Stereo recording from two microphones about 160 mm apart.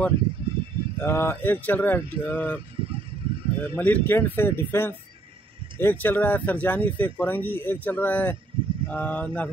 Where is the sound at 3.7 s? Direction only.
10° left (ahead or behind).